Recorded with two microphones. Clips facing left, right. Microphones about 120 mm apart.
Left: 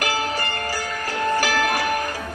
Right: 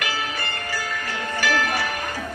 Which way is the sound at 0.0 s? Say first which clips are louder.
Left 4 dB; 40° left (ahead or behind).